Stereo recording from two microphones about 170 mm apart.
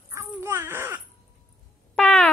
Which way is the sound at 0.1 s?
15° right (ahead or behind).